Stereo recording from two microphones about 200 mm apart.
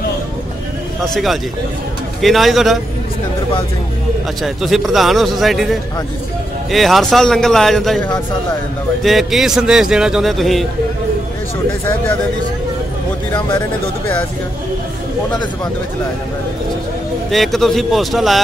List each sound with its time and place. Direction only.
1.0 s a man's voice: centre (ahead or behind)
4.4 s a man's voice: centre (ahead or behind)
17.3 s a man's voice: centre (ahead or behind)